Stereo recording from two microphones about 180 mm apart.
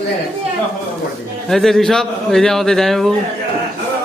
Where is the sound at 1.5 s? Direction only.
Centre (ahead or behind).